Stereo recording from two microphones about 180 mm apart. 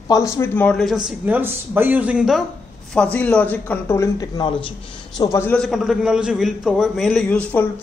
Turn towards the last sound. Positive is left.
turn(degrees=10)  # may be behind; listen again after turning